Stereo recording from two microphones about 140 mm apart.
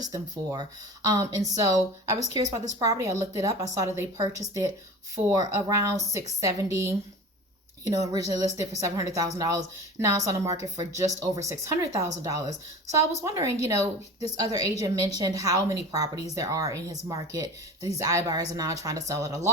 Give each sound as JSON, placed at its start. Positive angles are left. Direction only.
{"t": 0.0, "sound": "a woman's voice", "side_deg": -30}
{"t": 11.9, "sound": "a woman's voice", "side_deg": -25}